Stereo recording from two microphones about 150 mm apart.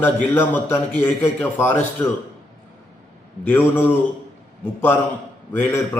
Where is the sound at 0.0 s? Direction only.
15° left (ahead or behind).